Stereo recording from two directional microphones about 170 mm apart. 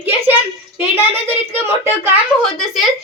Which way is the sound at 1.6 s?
15° right (ahead or behind).